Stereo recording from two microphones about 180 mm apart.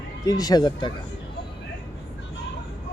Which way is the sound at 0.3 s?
20° left (ahead or behind).